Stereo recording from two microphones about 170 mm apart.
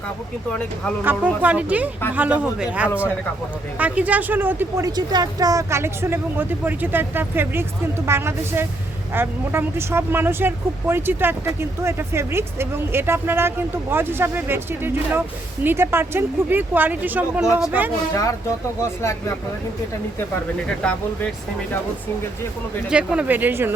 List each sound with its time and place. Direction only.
1.4 s speech: 10° right (ahead or behind)
4.9 s speech: 25° right (ahead or behind)
18.1 s speech: 20° left (ahead or behind)
20.7 s speech: 5° left (ahead or behind)
22.9 s speech: 5° right (ahead or behind)